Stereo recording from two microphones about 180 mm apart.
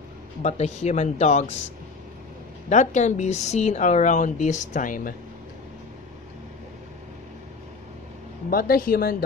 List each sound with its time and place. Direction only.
0.4 s speech: 40° left (ahead or behind)
2.7 s speech: 40° left (ahead or behind)
8.5 s a woman's voice: 55° left (ahead or behind)